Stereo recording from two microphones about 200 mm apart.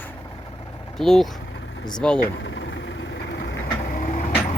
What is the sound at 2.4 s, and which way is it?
Vehicle, 65° left (ahead or behind).